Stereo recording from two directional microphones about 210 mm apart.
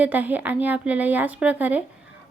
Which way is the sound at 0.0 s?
10° right (ahead or behind).